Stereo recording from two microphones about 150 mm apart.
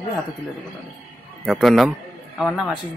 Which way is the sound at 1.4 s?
Centre (ahead or behind).